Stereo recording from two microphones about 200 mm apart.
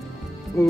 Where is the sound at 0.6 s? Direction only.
15° left (ahead or behind).